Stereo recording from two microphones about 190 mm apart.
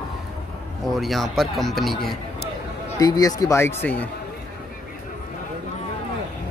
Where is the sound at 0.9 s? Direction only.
Centre (ahead or behind).